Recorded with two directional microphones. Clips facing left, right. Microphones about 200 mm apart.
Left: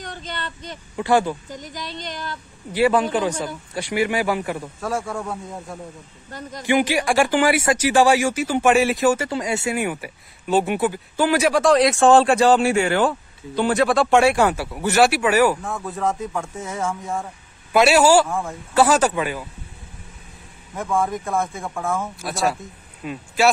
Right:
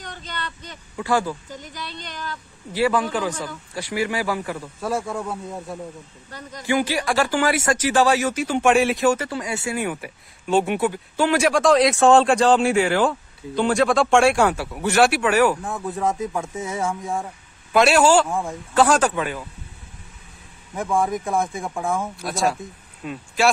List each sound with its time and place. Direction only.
0.0 s speech: 45° left (ahead or behind)
0.9 s speech: 25° left (ahead or behind)
1.6 s speech: 45° left (ahead or behind)
2.7 s speech: 20° left (ahead or behind)
4.8 s speech: 5° right (ahead or behind)
6.6 s speech: 20° left (ahead or behind)
9.3 s speech: 25° left (ahead or behind)
9.8 s speech: 5° left (ahead or behind)
15.6 s speech: 15° right (ahead or behind)
17.7 s speech: 5° left (ahead or behind)
20.9 s speech: 15° right (ahead or behind)
22.2 s speech: 5° left (ahead or behind)